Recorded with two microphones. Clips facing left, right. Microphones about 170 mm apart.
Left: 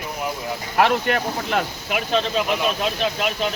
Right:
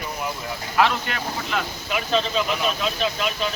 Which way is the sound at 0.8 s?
55° left (ahead or behind).